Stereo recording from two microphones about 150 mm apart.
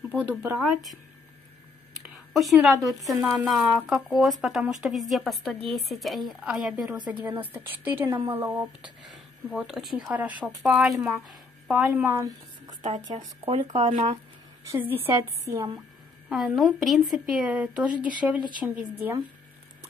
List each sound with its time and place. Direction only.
0.1 s a woman's voice: 10° right (ahead or behind)
2.3 s a woman's voice: centre (ahead or behind)
8.1 s a woman's voice: 30° right (ahead or behind)
8.5 s a woman's voice: 15° right (ahead or behind)
11.9 s a woman's voice: 15° right (ahead or behind)
12.8 s speech: 45° right (ahead or behind)
14.7 s a woman's voice: 10° right (ahead or behind)
16.3 s a woman's voice: centre (ahead or behind)